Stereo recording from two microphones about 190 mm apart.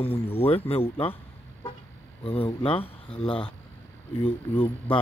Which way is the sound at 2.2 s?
30° left (ahead or behind).